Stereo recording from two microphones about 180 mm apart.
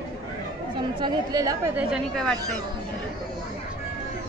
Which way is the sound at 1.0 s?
20° right (ahead or behind).